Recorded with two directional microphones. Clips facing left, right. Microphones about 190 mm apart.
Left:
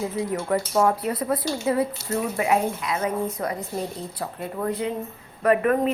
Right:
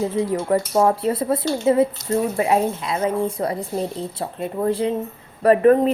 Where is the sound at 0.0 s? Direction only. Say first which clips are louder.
Right 5 dB; 30° right (ahead or behind).